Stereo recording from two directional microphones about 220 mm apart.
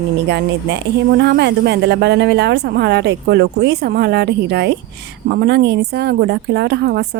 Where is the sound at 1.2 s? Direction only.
50° right (ahead or behind).